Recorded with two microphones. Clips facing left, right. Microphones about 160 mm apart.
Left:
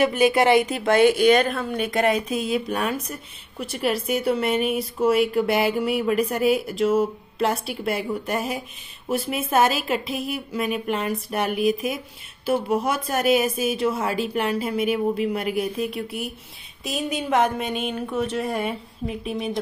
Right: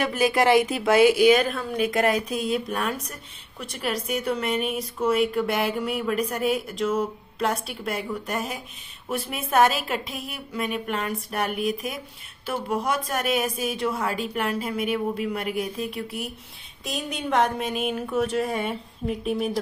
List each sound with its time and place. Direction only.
0.0 s a woman's voice: centre (ahead or behind)